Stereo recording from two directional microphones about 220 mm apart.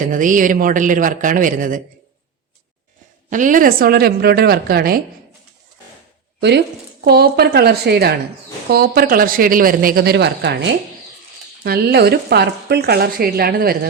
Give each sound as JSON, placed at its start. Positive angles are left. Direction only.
{"t": 0.1, "sound": "a man's voice", "side_deg": -35}
{"t": 3.2, "sound": "a woman's voice", "side_deg": -35}
{"t": 7.0, "sound": "a woman's voice", "side_deg": -45}